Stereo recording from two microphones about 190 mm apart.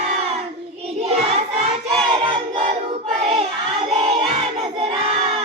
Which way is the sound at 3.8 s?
30° right (ahead or behind).